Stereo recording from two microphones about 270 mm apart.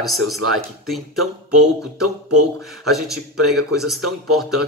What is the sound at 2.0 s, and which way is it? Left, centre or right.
Music, right.